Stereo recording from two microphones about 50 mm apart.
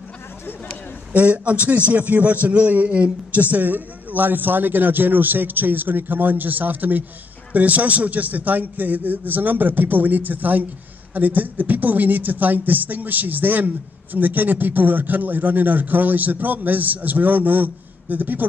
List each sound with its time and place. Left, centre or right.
1.1 s a man's voice: right